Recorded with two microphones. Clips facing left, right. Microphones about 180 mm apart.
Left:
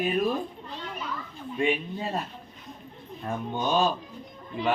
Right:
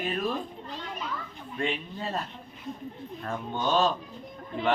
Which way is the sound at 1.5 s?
15° left (ahead or behind).